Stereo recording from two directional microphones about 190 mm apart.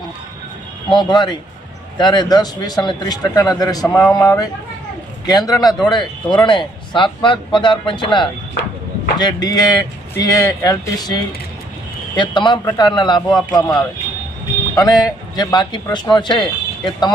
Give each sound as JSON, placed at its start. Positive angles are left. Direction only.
{"t": 0.9, "sound": "a man's voice", "side_deg": 25}
{"t": 3.8, "sound": "speech", "side_deg": 5}
{"t": 4.1, "sound": "a man's voice", "side_deg": 15}
{"t": 14.8, "sound": "a man's voice", "side_deg": 20}